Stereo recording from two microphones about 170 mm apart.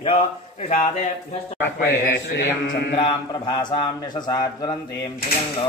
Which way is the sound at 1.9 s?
90° left.